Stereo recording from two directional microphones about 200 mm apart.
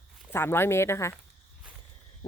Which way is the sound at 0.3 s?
10° left (ahead or behind).